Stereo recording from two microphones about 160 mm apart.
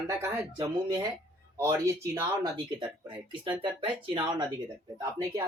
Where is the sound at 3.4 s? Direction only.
30° right (ahead or behind).